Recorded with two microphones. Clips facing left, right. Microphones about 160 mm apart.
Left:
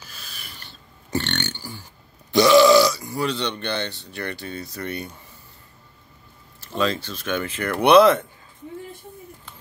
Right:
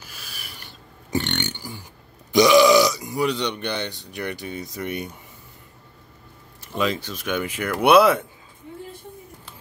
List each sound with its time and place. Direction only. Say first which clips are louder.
0.1 s burping: right 1 dB; 10° right (ahead or behind)
2.3 s speech: left 1 dB; 15° right (ahead or behind)
6.6 s speech: left 1 dB; 15° right (ahead or behind)